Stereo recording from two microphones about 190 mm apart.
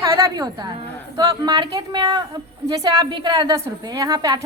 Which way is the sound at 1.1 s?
20° right (ahead or behind).